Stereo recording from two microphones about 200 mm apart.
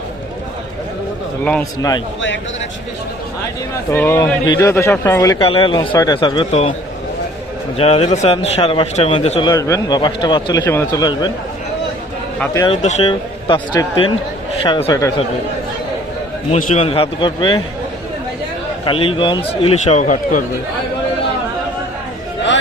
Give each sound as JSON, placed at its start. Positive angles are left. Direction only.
{"t": 3.9, "sound": "speech", "side_deg": 10}
{"t": 5.5, "sound": "a man's voice", "side_deg": 25}
{"t": 7.8, "sound": "a man's voice", "side_deg": 30}
{"t": 9.5, "sound": "a man's voice", "side_deg": 15}
{"t": 12.5, "sound": "a man's voice", "side_deg": 25}
{"t": 16.5, "sound": "a man's voice", "side_deg": 35}
{"t": 18.9, "sound": "a man's voice", "side_deg": 25}